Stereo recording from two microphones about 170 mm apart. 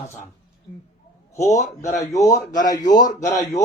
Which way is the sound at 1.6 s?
45° left (ahead or behind).